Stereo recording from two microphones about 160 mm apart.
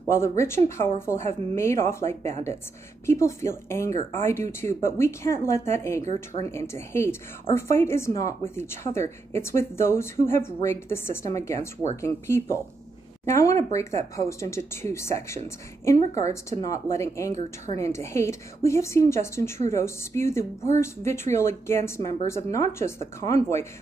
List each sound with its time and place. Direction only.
0.1 s a woman's voice: 15° left (ahead or behind)